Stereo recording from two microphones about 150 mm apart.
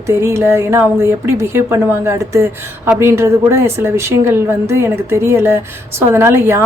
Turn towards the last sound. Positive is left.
turn(degrees=-15)  # may be behind; listen again after turning